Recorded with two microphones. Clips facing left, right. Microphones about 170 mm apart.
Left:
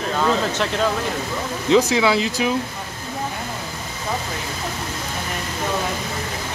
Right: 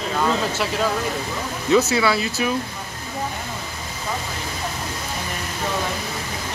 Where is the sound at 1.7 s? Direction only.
15° left (ahead or behind).